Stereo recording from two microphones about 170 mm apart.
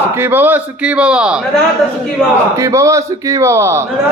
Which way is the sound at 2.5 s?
15° right (ahead or behind).